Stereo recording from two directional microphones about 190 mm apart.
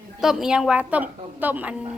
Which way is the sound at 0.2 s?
Centre (ahead or behind).